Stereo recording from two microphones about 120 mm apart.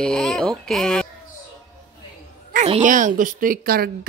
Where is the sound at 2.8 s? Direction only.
90° right.